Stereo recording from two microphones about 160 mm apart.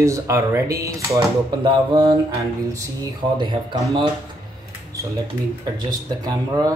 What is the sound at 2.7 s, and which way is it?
Speech, 20° right (ahead or behind).